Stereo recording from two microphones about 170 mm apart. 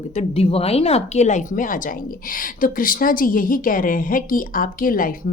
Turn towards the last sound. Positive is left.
turn(degrees=55)  # may be behind; listen again after turning